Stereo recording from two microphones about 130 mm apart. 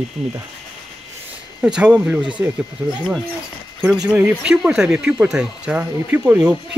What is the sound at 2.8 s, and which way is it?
Speech, 20° right (ahead or behind).